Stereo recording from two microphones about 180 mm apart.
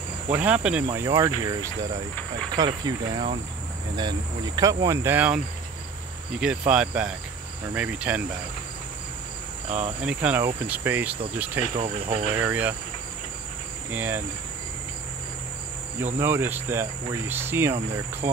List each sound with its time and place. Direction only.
0.3 s cricket: 10° right (ahead or behind)
0.9 s speech: 20° right (ahead or behind)
3.9 s cricket: 25° right (ahead or behind); by 5.4 s 10° right (ahead or behind)
6.4 s speech: 5° right (ahead or behind)
7.7 s cricket: 5° right (ahead or behind)
9.7 s cricket: 40° right (ahead or behind)
10.0 s cricket: 10° right (ahead or behind)
11.7 s cricket: 35° right (ahead or behind)
12.3 s cricket: 10° right (ahead or behind)
13.8 s cricket: 10° right (ahead or behind)
16.2 s cricket: 10° right (ahead or behind)